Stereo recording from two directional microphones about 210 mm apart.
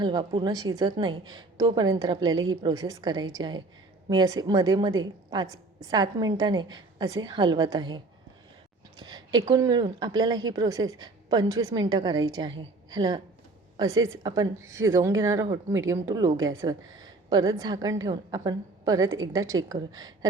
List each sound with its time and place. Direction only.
0.0 s a woman's voice: 20° right (ahead or behind)